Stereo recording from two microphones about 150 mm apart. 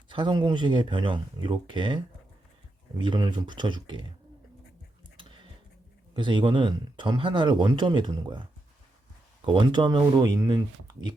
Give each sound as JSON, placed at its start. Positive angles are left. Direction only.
{"t": 0.1, "sound": "speech", "side_deg": -30}
{"t": 3.0, "sound": "speech", "side_deg": -30}
{"t": 6.1, "sound": "speech", "side_deg": -35}
{"t": 9.5, "sound": "speech", "side_deg": -30}